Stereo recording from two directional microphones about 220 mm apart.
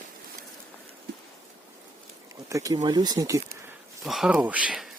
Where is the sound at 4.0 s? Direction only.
Centre (ahead or behind).